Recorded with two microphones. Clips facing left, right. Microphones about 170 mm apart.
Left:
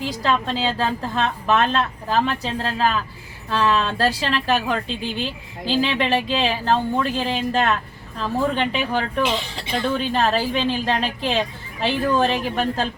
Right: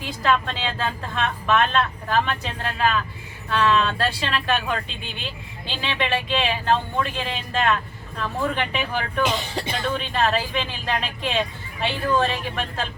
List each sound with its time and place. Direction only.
0.2 s a woman's voice: 35° left (ahead or behind)